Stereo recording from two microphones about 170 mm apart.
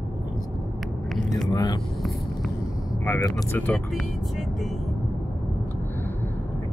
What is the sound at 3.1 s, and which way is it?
Speech, 20° left (ahead or behind).